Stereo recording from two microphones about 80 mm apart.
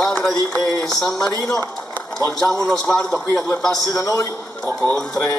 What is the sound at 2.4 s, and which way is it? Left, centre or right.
A man's voice, centre.